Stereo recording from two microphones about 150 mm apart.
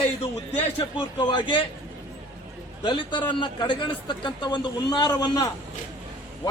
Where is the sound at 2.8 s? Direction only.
30° left (ahead or behind).